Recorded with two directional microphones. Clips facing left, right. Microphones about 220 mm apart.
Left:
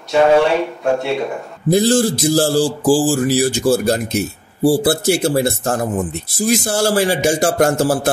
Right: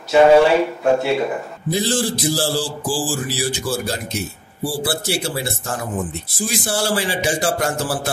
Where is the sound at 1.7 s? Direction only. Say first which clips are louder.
Left 7 dB; 45° left (ahead or behind).